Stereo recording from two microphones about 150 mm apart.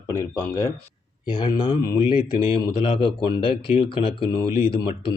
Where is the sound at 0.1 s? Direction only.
20° left (ahead or behind).